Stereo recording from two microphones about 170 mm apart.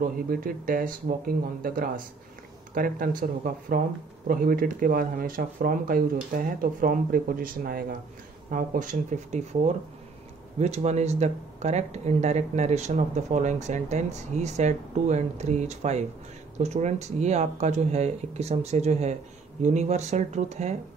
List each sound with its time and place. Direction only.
0.0 s speech: 55° right (ahead or behind)
10.6 s speech: 40° right (ahead or behind)